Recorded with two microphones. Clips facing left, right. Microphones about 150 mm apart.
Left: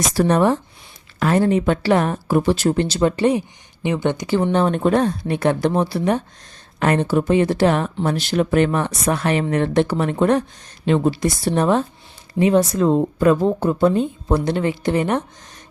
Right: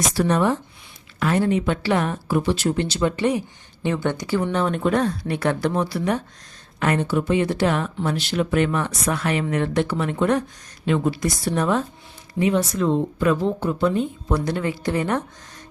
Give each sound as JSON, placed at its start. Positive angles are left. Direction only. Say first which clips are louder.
{"t": 0.1, "sound": "speech", "louder": "left 5 dB", "side_deg": 40}
{"t": 3.8, "sound": "a woman's voice", "louder": "left 3 dB", "side_deg": 20}